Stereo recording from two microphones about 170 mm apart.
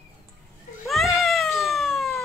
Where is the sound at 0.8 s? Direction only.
Centre (ahead or behind).